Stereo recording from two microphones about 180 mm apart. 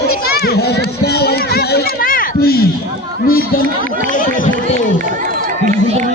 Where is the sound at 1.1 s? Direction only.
60° left (ahead or behind).